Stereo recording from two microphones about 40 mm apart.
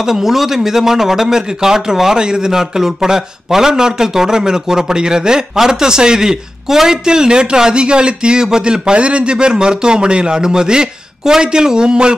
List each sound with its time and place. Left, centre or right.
0.0 s speech: centre